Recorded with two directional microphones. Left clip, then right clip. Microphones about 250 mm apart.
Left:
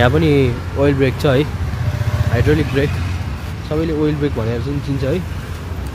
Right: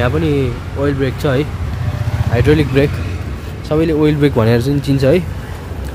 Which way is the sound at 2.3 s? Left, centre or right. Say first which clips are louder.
Right 4 dB; centre.